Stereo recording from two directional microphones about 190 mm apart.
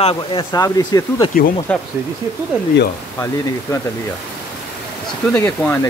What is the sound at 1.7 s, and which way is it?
Speech, 5° left (ahead or behind).